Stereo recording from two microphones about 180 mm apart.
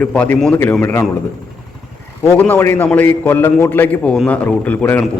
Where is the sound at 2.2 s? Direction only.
10° left (ahead or behind).